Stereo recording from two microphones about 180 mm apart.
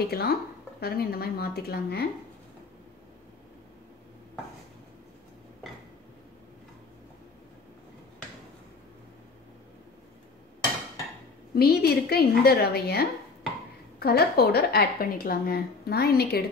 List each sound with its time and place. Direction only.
0.0 s a woman's voice: 60° left (ahead or behind)
11.5 s a woman's voice: 60° left (ahead or behind)